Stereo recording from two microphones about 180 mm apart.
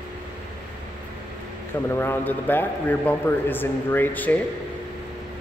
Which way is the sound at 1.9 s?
10° left (ahead or behind).